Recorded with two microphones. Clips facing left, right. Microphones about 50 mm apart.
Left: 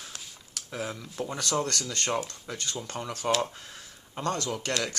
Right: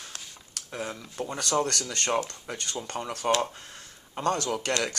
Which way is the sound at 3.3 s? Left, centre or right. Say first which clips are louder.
Right 2 dB; centre.